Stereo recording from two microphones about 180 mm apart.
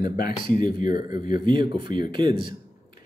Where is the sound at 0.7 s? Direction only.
50° left (ahead or behind).